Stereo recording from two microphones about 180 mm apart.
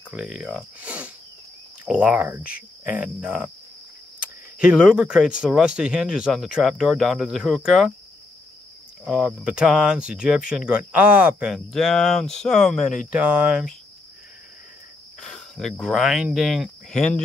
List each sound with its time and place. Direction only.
0.1 s speech: 5° right (ahead or behind)
1.9 s cricket: 5° right (ahead or behind)
4.2 s speech: 5° right (ahead or behind)
9.0 s speech: 5° right (ahead or behind)
15.1 s speech: centre (ahead or behind)